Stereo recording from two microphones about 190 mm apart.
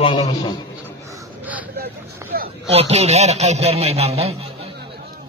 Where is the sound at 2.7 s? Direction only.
35° right (ahead or behind).